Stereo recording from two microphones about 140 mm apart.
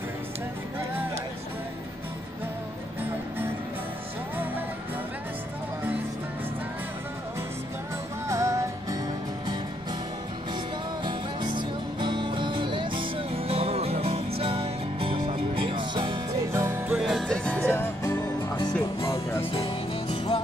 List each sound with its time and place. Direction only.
8.3 s music: 20° right (ahead or behind)
11.1 s music: 35° right (ahead or behind)
16.5 s music: 15° right (ahead or behind)
16.9 s music: centre (ahead or behind)
17.6 s music: 20° left (ahead or behind)
19.5 s music: 45° left (ahead or behind)